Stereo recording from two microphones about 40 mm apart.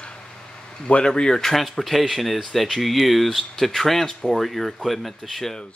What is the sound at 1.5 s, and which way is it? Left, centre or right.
Speech, centre.